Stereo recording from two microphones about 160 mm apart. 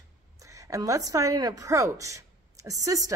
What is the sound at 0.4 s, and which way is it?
A woman's voice, 20° right (ahead or behind).